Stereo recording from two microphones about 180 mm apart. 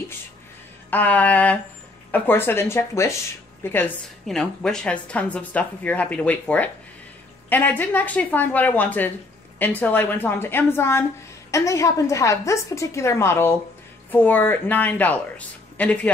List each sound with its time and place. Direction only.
0.8 s a woman's voice: 10° left (ahead or behind)